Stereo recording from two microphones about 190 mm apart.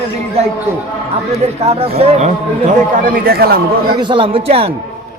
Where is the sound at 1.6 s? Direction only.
30° right (ahead or behind).